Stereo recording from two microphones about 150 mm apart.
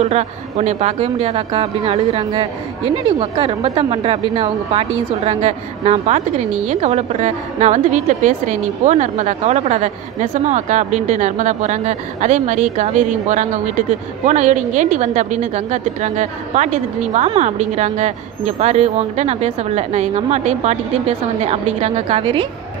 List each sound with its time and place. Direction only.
0.0 s a woman's voice: 45° right (ahead or behind)